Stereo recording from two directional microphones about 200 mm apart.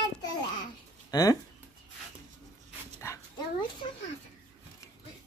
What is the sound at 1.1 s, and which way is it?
Speech, 20° left (ahead or behind).